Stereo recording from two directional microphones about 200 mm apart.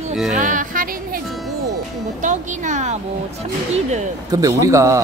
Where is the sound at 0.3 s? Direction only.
40° right (ahead or behind).